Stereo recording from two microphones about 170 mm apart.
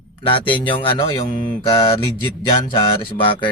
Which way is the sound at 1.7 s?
30° left (ahead or behind).